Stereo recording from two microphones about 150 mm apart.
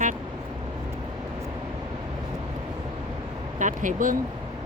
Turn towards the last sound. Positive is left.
turn(degrees=-60)  # may be behind; listen again after turning